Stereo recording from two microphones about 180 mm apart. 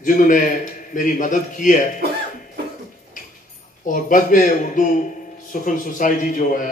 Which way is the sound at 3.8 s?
45° left (ahead or behind).